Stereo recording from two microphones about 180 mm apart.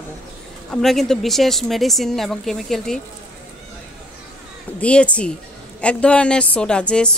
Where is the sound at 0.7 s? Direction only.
Centre (ahead or behind).